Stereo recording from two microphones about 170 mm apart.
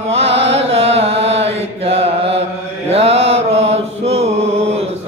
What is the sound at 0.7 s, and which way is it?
Carnatic music, 35° right (ahead or behind).